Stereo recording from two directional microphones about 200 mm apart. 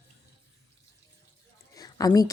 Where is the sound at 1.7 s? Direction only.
20° left (ahead or behind).